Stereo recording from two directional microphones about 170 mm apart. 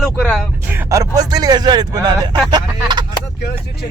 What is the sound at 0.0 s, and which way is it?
Speech, 5° left (ahead or behind).